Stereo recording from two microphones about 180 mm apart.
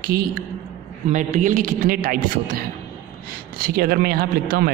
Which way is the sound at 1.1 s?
40° right (ahead or behind).